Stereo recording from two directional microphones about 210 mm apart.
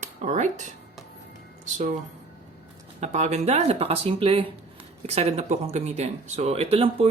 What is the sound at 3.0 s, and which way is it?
Speech, 35° right (ahead or behind).